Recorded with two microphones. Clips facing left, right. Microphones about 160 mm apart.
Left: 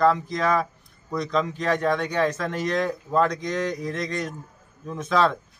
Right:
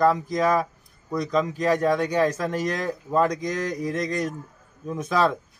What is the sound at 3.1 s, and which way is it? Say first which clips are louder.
Speech: right 3 dB; 10° right (ahead or behind).